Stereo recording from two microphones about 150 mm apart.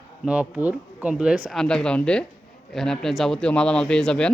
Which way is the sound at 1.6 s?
5° left (ahead or behind).